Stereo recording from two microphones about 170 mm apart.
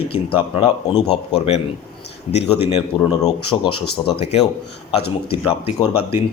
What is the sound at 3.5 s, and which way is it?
Speech, 20° left (ahead or behind).